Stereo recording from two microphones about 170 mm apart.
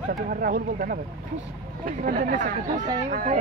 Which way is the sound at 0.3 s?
55° right (ahead or behind).